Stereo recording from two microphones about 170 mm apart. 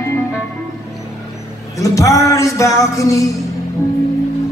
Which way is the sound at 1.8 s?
20° left (ahead or behind).